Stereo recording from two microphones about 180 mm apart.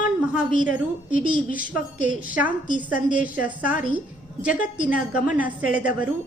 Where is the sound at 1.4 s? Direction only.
45° left (ahead or behind).